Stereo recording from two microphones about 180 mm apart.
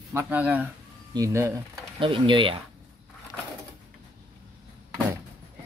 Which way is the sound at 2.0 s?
30° right (ahead or behind).